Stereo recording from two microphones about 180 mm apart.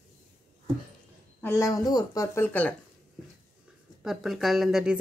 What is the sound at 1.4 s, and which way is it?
Speech, 15° left (ahead or behind).